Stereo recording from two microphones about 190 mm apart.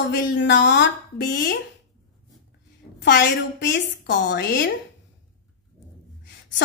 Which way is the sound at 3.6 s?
65° left (ahead or behind).